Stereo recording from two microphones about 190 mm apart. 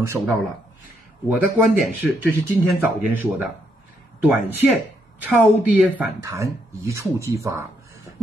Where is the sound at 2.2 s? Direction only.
15° right (ahead or behind).